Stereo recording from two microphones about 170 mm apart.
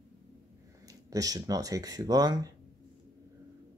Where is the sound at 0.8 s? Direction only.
20° right (ahead or behind).